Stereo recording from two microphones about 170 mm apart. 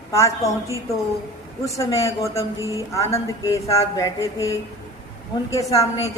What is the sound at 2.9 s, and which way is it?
A man's voice, 20° left (ahead or behind).